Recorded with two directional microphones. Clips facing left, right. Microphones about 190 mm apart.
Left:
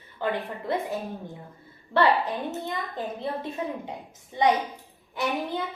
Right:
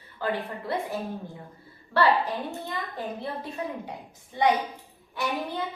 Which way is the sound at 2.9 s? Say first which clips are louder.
Left 2 dB; 20° left (ahead or behind).